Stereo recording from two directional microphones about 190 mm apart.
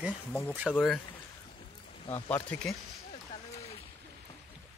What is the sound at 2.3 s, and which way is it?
Speech, 10° left (ahead or behind).